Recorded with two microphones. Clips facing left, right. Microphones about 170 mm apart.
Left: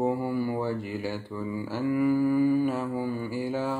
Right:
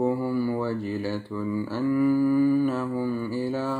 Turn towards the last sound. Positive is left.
turn(degrees=15)  # may be behind; listen again after turning